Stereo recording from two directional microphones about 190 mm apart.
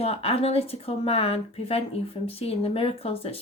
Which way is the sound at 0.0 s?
30° left (ahead or behind).